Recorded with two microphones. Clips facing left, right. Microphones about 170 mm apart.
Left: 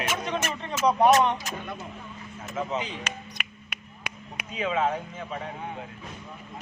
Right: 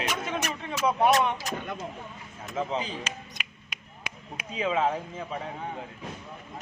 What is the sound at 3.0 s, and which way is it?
Finger snapping, 60° left (ahead or behind).